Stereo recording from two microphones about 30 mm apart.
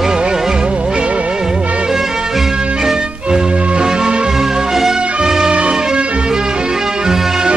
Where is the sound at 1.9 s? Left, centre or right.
Centre.